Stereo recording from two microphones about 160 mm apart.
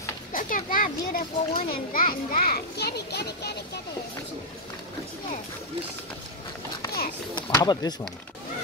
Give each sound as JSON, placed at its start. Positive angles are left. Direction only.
{"t": 0.3, "sound": "a child's voice", "side_deg": 60}
{"t": 7.3, "sound": "speech", "side_deg": 25}